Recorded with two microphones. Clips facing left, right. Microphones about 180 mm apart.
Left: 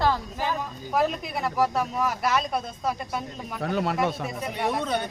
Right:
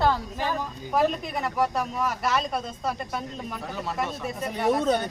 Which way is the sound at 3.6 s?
65° left (ahead or behind).